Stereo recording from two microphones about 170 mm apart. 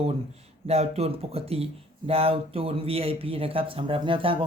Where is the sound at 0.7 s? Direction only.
35° right (ahead or behind).